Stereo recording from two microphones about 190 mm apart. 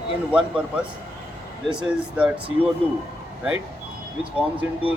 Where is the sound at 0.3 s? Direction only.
5° right (ahead or behind).